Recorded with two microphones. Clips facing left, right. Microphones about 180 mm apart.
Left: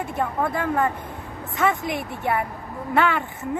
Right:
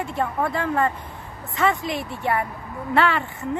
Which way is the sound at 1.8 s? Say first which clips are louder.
Even; 20° left (ahead or behind).